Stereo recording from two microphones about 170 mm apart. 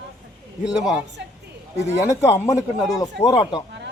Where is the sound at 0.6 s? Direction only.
5° right (ahead or behind).